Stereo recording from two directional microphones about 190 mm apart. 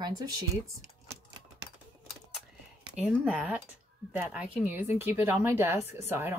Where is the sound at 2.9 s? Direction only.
5° right (ahead or behind).